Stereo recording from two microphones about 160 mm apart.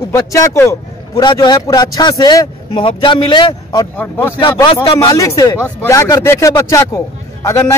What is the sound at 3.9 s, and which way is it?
Speech, 10° left (ahead or behind).